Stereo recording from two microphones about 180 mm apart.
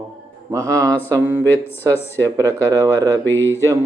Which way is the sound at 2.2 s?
15° right (ahead or behind).